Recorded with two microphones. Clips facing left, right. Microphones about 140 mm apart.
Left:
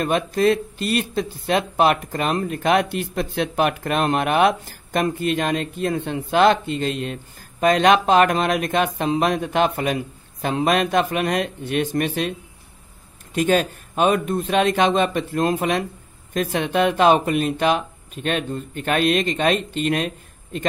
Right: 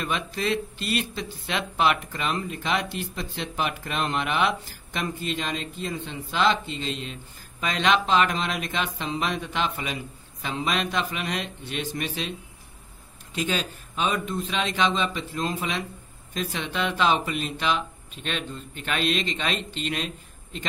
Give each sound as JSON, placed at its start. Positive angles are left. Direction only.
{"t": 0.0, "sound": "speech", "side_deg": 45}